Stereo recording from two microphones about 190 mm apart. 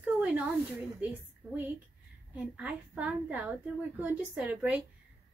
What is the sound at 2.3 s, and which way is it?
A woman's voice, 5° right (ahead or behind).